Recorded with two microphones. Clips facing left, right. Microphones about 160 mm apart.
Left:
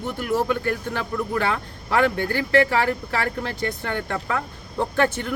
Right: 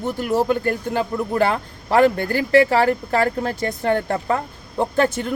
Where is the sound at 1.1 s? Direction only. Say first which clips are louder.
Right 3 dB; 30° right (ahead or behind).